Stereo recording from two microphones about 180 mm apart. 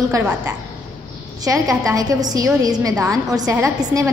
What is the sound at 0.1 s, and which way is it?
A woman's voice, 20° right (ahead or behind).